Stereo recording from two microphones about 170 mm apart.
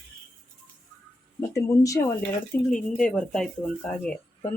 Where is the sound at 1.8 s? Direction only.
20° left (ahead or behind).